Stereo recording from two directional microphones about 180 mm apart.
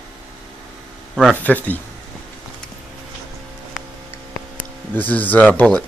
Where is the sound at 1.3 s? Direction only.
10° left (ahead or behind).